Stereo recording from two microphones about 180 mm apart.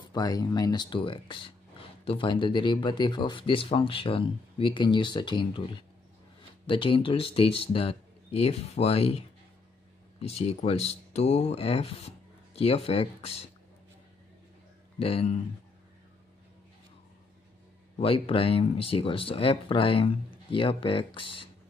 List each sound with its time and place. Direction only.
0.0 s speech: 20° left (ahead or behind)
10.2 s speech: 35° left (ahead or behind)
15.0 s speech: 30° left (ahead or behind)
17.9 s speech: 30° left (ahead or behind)